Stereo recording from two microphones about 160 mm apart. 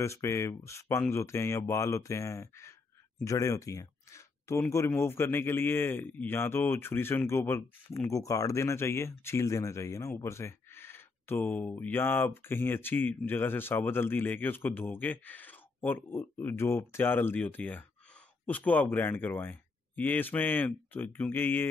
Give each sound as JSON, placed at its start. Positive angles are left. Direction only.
{"t": 0.0, "sound": "speech", "side_deg": 15}